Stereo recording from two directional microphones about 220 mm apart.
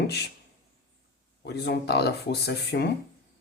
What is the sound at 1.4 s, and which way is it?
Speech, 50° left (ahead or behind).